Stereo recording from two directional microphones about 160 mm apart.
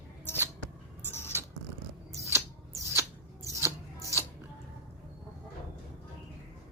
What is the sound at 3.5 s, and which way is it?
Rub, 15° right (ahead or behind).